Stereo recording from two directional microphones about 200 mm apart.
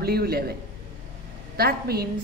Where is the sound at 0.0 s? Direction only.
50° right (ahead or behind).